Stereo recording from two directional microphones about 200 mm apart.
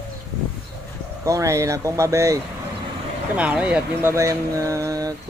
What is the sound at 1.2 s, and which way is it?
Speech, 15° right (ahead or behind).